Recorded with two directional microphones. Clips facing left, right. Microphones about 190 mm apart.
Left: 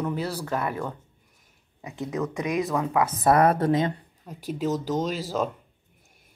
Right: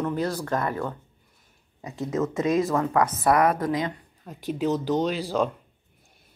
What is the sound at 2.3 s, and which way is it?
Speech, 15° left (ahead or behind).